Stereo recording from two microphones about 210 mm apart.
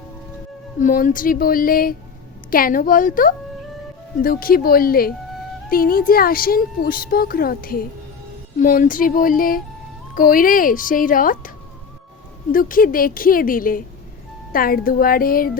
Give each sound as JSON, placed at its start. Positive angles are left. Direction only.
{"t": 0.8, "sound": "a woman's voice", "side_deg": 40}